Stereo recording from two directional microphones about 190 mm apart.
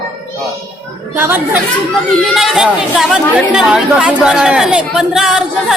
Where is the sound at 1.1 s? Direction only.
10° right (ahead or behind).